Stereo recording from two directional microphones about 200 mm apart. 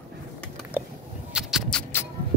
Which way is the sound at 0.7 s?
10° right (ahead or behind).